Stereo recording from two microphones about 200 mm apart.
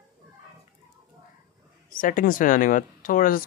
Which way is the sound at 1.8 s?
45° left (ahead or behind).